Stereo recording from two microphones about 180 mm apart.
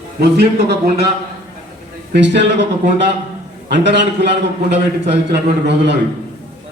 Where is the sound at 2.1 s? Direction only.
75° right (ahead or behind).